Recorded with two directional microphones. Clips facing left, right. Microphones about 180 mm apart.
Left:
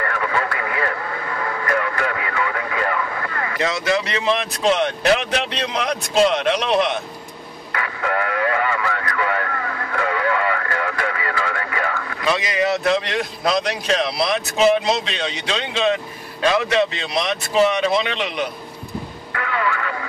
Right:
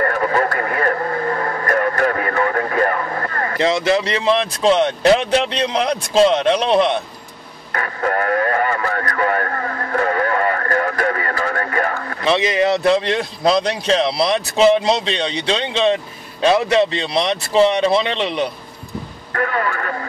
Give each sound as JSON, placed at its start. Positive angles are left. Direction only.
{"t": 0.0, "sound": "radio", "side_deg": -40}
{"t": 3.5, "sound": "speech", "side_deg": -30}
{"t": 7.7, "sound": "radio", "side_deg": -40}
{"t": 12.3, "sound": "a man's voice", "side_deg": -25}
{"t": 19.3, "sound": "speech", "side_deg": -45}